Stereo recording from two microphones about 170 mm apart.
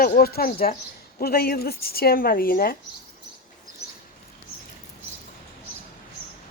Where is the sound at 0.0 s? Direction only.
60° left (ahead or behind).